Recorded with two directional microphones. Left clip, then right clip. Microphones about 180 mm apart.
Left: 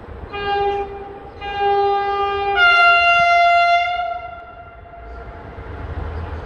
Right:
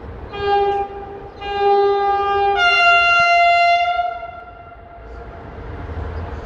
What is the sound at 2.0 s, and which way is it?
Siren, 25° right (ahead or behind).